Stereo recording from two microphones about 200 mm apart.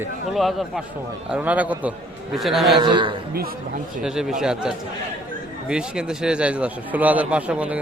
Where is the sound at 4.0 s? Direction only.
5° right (ahead or behind).